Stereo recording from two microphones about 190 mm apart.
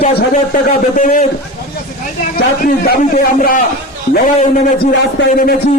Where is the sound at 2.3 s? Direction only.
50° left (ahead or behind).